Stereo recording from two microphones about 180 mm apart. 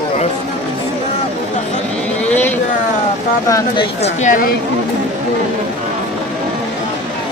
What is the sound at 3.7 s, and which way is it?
Speech, 40° left (ahead or behind).